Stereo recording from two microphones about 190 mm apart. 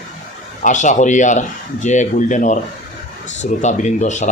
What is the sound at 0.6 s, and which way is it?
Speech, 40° left (ahead or behind).